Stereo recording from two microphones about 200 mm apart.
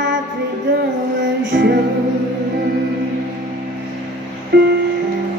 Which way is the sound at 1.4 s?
60° right (ahead or behind).